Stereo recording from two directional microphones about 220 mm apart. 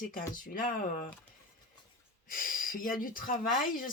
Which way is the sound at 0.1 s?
40° left (ahead or behind).